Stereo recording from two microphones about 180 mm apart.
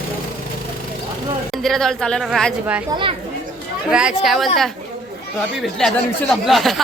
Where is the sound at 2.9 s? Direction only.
30° right (ahead or behind).